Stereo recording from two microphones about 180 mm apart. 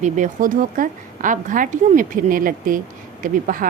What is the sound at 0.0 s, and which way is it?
A woman's voice, 45° right (ahead or behind).